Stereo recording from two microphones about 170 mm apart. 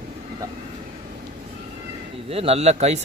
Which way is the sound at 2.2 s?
35° right (ahead or behind).